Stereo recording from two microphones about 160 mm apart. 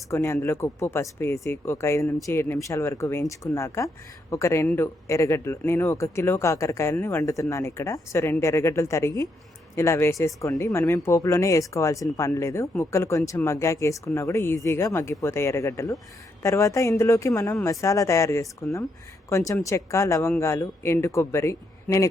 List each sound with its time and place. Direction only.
0.1 s speech: 15° left (ahead or behind)